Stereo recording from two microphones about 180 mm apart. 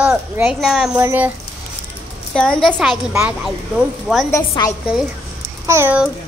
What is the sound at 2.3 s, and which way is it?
Speech, 5° left (ahead or behind).